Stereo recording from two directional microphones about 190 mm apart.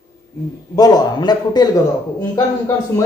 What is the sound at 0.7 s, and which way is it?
Speech, 20° left (ahead or behind).